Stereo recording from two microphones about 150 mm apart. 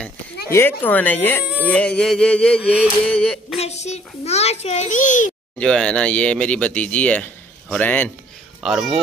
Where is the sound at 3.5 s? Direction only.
45° left (ahead or behind).